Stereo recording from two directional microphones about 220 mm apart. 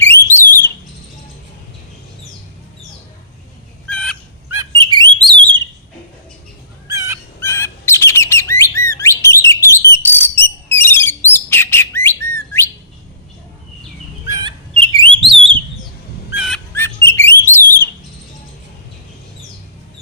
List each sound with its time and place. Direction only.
0.0 s alarm: 10° left (ahead or behind)
3.8 s fowl: 5° left (ahead or behind)
4.5 s bird: 20° right (ahead or behind)
6.8 s fowl: 15° right (ahead or behind)
7.3 s bird: 10° left (ahead or behind)
14.3 s bird: 20° right (ahead or behind)
16.3 s fowl: 5° right (ahead or behind)
16.7 s bird: 10° left (ahead or behind)